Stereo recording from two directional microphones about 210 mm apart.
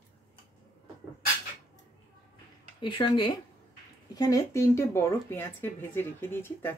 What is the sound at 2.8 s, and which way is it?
Speech, 20° left (ahead or behind).